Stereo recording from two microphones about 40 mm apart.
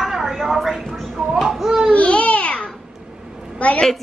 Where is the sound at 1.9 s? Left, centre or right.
Left.